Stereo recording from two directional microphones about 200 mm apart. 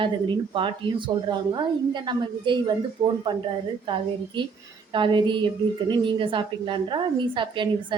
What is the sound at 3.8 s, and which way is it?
A woman's voice, 25° right (ahead or behind).